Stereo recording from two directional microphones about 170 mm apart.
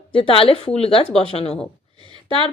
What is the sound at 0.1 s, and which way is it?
Speech, 30° left (ahead or behind).